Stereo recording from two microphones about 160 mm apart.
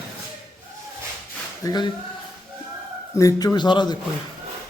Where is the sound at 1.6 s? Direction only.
25° left (ahead or behind).